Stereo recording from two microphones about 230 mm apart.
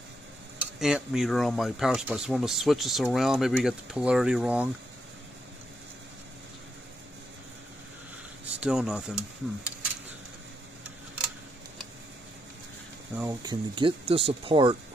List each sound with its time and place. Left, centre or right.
0.6 s speech: centre
8.5 s speech: centre
13.1 s speech: centre